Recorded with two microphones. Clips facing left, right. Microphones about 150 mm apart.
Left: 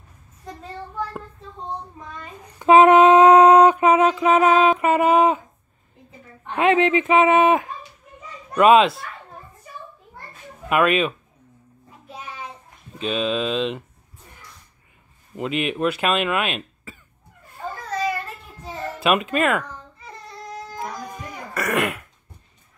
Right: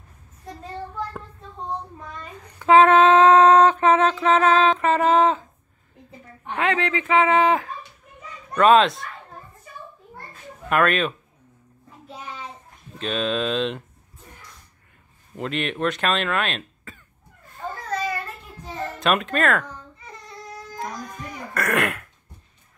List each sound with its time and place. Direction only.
2.3 s speech: 20° left (ahead or behind)
6.5 s speech: 20° left (ahead or behind)
8.5 s speech: 10° left (ahead or behind)
10.7 s speech: 5° left (ahead or behind)
13.0 s speech: 5° left (ahead or behind)
15.3 s speech: 5° left (ahead or behind)
18.9 s speech: 5° left (ahead or behind)
20.8 s cough: 5° left (ahead or behind)